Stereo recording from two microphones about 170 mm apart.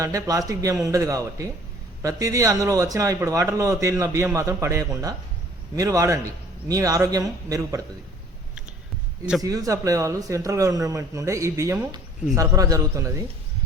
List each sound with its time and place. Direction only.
0.0 s a man's voice: 20° right (ahead or behind)
9.4 s a man's voice: 20° right (ahead or behind)